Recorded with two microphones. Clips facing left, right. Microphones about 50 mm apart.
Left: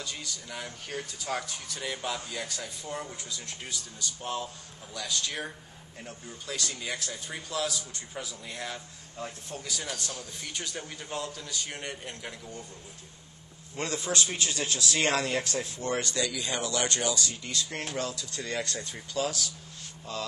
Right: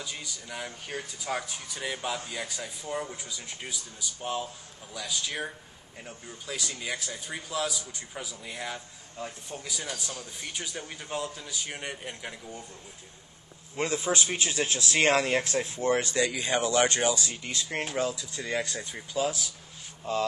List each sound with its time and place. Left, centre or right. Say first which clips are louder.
0.0 s a man's voice: even; centre
13.7 s speech: right 3 dB; centre; by 15.4 s right
15.4 s speech: right 5 dB; right
17.9 s speech: right 4 dB; centre
20.1 s speech: right 7 dB; right